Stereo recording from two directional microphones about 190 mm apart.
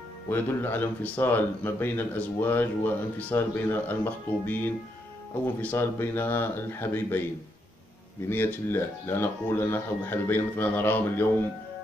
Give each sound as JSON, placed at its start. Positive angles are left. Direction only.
{"t": 0.3, "sound": "speech", "side_deg": 10}
{"t": 8.3, "sound": "speech", "side_deg": 10}